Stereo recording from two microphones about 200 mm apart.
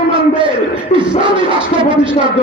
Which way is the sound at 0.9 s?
25° right (ahead or behind).